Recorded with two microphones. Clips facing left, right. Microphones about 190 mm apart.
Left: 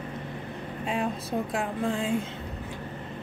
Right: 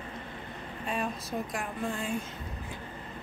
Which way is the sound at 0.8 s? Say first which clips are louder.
Left 4 dB; 25° left (ahead or behind).